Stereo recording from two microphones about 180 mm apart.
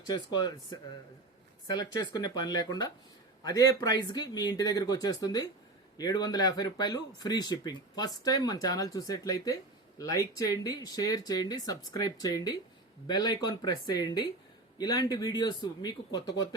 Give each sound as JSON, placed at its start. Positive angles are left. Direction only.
{"t": 0.0, "sound": "speech", "side_deg": 25}